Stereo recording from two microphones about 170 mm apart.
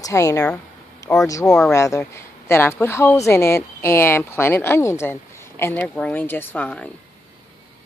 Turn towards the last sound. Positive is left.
turn(degrees=5)  # may be behind; listen again after turning